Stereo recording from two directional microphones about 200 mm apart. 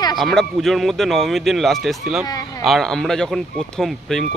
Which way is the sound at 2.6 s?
Centre (ahead or behind).